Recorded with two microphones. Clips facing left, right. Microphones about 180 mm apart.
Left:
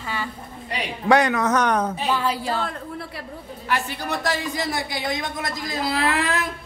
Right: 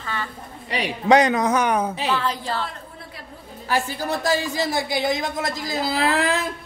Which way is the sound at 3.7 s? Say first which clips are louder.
Right 2 dB; 30° right (ahead or behind).